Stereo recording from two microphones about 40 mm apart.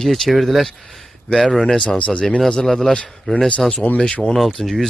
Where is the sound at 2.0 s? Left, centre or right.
Left.